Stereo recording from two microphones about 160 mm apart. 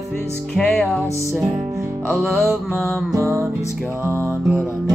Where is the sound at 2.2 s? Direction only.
Centre (ahead or behind).